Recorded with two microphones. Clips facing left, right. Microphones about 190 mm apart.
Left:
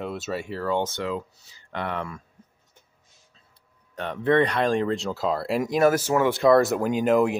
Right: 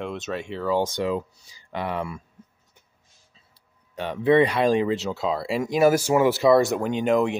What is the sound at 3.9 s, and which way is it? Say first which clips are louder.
Speech: right 3 dB; 5° right (ahead or behind).